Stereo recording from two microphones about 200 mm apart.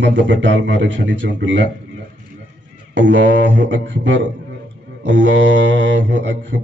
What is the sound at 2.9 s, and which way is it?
Speech, 65° right (ahead or behind).